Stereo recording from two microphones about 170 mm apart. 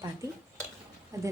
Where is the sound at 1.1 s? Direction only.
20° right (ahead or behind).